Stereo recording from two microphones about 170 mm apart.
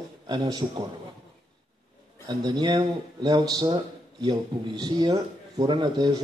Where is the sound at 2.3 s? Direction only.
25° right (ahead or behind).